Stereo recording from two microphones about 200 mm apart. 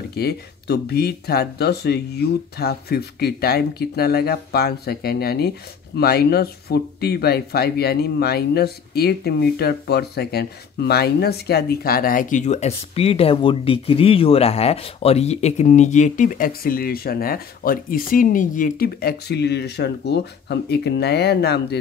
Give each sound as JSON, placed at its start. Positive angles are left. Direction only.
{"t": 0.1, "sound": "speech", "side_deg": 55}